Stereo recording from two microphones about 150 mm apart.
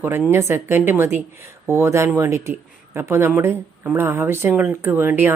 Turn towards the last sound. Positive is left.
turn(degrees=-15)  # may be behind; listen again after turning